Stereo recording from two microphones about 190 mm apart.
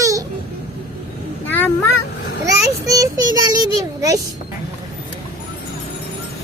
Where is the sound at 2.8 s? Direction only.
20° right (ahead or behind).